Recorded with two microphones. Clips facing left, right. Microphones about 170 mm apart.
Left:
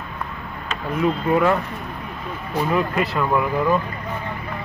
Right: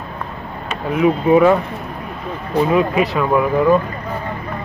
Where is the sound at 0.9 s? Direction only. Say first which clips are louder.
Right 7 dB; 10° right (ahead or behind).